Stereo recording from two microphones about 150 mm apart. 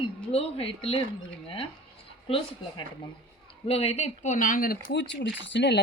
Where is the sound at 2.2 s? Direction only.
35° left (ahead or behind); by 5.0 s 75° left (ahead or behind).